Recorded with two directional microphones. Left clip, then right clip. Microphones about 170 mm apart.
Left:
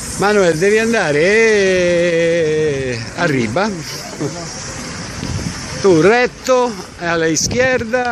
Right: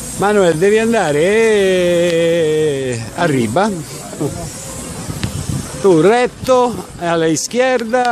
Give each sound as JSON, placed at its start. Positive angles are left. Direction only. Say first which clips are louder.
{"t": 0.2, "sound": "speech", "louder": "right 1 dB", "side_deg": -10}
{"t": 5.9, "sound": "speech", "louder": "even", "side_deg": -5}